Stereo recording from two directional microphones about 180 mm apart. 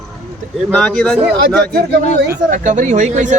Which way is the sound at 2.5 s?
45° right (ahead or behind).